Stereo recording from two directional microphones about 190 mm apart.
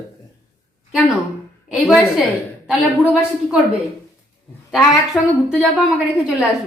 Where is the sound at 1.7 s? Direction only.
Centre (ahead or behind).